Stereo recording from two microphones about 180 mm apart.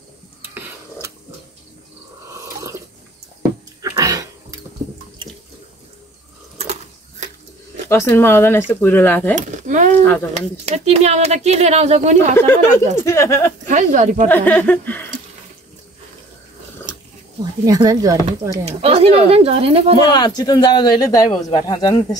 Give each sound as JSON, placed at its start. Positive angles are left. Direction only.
{"t": 2.3, "sound": "drip", "side_deg": -15}
{"t": 3.8, "sound": "a sound", "side_deg": -20}
{"t": 6.6, "sound": "a sound", "side_deg": -35}
{"t": 7.9, "sound": "speech", "side_deg": 15}
{"t": 9.3, "sound": "speech", "side_deg": -45}
{"t": 12.4, "sound": "speech", "side_deg": 15}
{"t": 13.7, "sound": "speech", "side_deg": -40}
{"t": 14.3, "sound": "speech", "side_deg": 10}
{"t": 17.6, "sound": "speech", "side_deg": -20}
{"t": 18.7, "sound": "speech", "side_deg": -35}
{"t": 20.1, "sound": "speech", "side_deg": 25}